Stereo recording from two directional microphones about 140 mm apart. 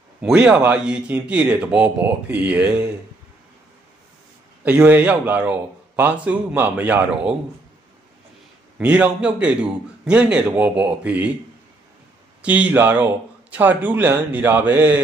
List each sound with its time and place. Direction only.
0.2 s speech: 5° right (ahead or behind)
4.6 s speech: 10° right (ahead or behind)
8.7 s speech: 10° right (ahead or behind)
12.4 s speech: 10° right (ahead or behind)